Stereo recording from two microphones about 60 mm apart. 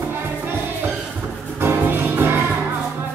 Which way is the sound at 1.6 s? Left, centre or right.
Right.